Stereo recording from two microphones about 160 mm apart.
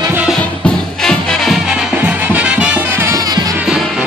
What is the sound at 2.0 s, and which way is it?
Music, 10° right (ahead or behind).